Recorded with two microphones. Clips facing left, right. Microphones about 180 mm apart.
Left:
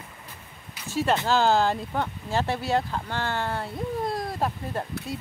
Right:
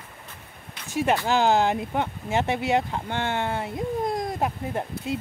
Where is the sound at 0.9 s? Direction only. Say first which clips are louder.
Right 1 dB; 15° right (ahead or behind).